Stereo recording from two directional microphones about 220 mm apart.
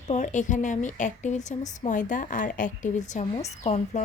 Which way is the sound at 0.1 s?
35° left (ahead or behind).